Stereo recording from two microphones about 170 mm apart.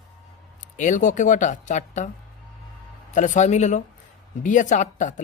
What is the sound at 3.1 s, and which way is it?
Speech, 45° left (ahead or behind).